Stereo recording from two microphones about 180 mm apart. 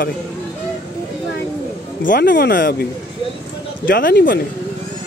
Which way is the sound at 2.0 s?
55° left (ahead or behind).